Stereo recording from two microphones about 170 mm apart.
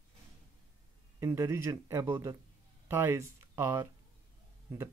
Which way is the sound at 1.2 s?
15° right (ahead or behind).